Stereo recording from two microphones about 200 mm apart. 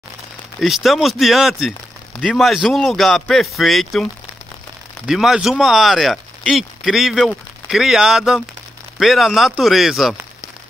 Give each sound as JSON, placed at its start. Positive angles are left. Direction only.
{"t": 0.6, "sound": "speech", "side_deg": 0}